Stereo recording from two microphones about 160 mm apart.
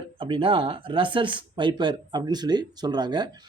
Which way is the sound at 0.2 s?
30° right (ahead or behind).